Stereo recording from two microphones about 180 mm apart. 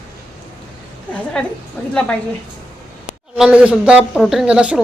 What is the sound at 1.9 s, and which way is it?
Speech, 5° left (ahead or behind).